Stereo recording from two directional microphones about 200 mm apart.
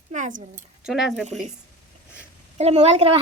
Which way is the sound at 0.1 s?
40° right (ahead or behind).